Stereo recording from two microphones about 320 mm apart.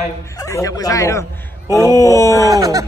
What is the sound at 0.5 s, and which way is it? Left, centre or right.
A man's voice, centre.